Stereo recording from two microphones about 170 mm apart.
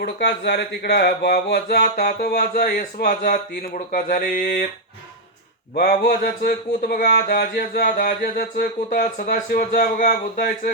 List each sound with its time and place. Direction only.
0.0 s speech: 80° left; by 4.6 s 55° left (ahead or behind)
5.7 s speech: 65° left (ahead or behind)